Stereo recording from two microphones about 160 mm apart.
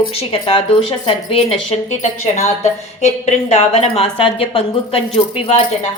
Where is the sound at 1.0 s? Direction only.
40° left (ahead or behind).